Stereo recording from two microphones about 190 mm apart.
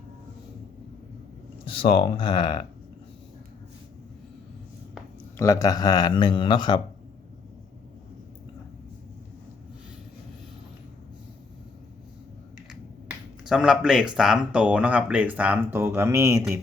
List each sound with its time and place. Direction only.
1.6 s a man's voice: 30° left (ahead or behind)
5.4 s a man's voice: 15° left (ahead or behind)
13.1 s a sound: 5° right (ahead or behind)
14.2 s speech: 5° right (ahead or behind)